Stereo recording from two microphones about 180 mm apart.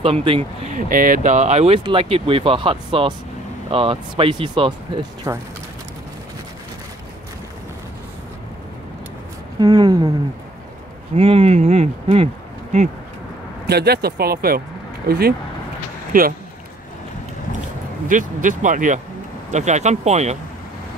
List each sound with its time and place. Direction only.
0.0 s speech: 30° right (ahead or behind)
9.6 s speech: 25° right (ahead or behind)
11.1 s speech: 35° right (ahead or behind)
13.7 s speech: 65° right (ahead or behind)
18.0 s speech: 45° right (ahead or behind)